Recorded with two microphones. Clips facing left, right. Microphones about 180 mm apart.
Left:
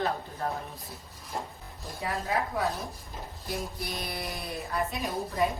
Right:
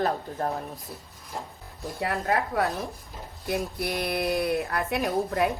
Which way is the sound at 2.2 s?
65° right (ahead or behind).